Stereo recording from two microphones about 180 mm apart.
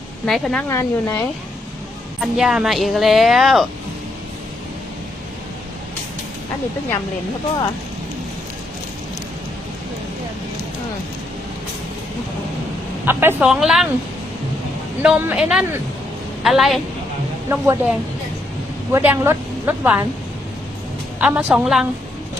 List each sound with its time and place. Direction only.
0.3 s a woman's voice: centre (ahead or behind)
0.7 s speech: 15° left (ahead or behind)
2.2 s a woman's voice: 5° right (ahead or behind)
13.1 s a woman's voice: 10° right (ahead or behind)
15.0 s a woman's voice: 5° right (ahead or behind)
17.5 s a woman's voice: 10° right (ahead or behind)
21.2 s a woman's voice: 10° right (ahead or behind)